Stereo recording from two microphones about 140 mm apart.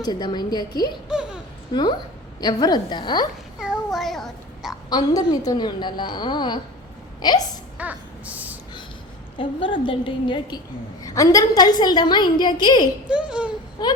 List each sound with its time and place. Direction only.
0.0 s a woman's voice: 30° left (ahead or behind)
1.0 s baby laughter: 5° right (ahead or behind)
1.7 s a woman's voice: 30° left (ahead or behind)
3.6 s child singing: 5° right (ahead or behind)
3.9 s a child's voice: centre (ahead or behind)
4.9 s a woman's voice: 30° left (ahead or behind)
7.8 s a sound: 10° right (ahead or behind)
9.4 s a woman's voice: 35° left (ahead or behind)
11.0 s a woman's voice: 25° left (ahead or behind)
13.1 s speech: 5° right (ahead or behind)
13.8 s a woman's voice: 30° left (ahead or behind)